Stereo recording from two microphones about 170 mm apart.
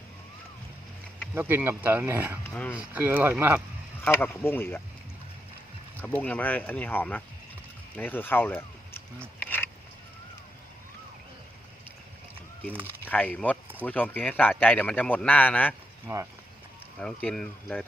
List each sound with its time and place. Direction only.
1.4 s speech: 15° right (ahead or behind)
2.4 s a man's voice: 15° left (ahead or behind)
2.7 s speech: 10° right (ahead or behind)
4.0 s a man's voice: 15° left (ahead or behind)
6.0 s a man's voice: 10° left (ahead or behind)
9.4 s a sound: 10° left (ahead or behind)
13.0 s a man's voice: 10° left (ahead or behind)
16.1 s speech: 15° right (ahead or behind)
17.0 s speech: 5° left (ahead or behind)